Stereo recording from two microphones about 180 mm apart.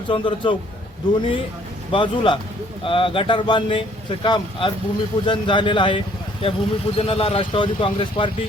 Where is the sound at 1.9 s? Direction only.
25° left (ahead or behind).